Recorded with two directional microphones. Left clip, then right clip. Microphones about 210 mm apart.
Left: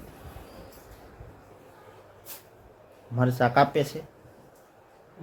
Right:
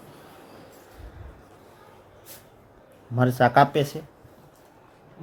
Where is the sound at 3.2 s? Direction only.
20° right (ahead or behind).